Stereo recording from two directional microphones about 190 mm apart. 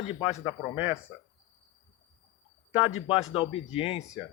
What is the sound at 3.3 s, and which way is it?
Speech, 30° left (ahead or behind).